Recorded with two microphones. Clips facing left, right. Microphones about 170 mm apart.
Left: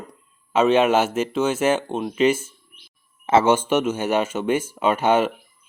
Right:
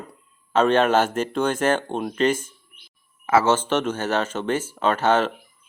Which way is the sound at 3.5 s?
10° left (ahead or behind).